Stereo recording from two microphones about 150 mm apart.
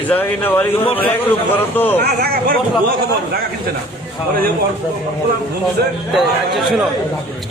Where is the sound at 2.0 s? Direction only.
90° right.